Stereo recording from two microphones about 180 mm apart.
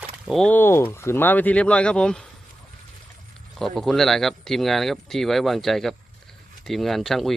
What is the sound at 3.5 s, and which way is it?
Speech, centre (ahead or behind).